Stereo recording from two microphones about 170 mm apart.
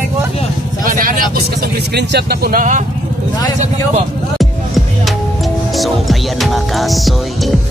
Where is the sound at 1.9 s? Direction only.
70° right (ahead or behind); by 2.8 s 55° right (ahead or behind).